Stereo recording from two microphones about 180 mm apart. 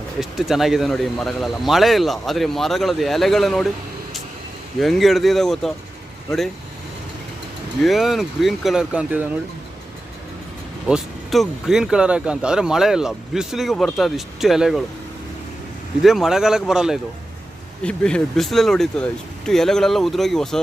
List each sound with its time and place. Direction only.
0.2 s speech: centre (ahead or behind)
4.8 s speech: centre (ahead or behind)
7.8 s speech: centre (ahead or behind)
10.8 s speech: centre (ahead or behind)
16.0 s speech: centre (ahead or behind)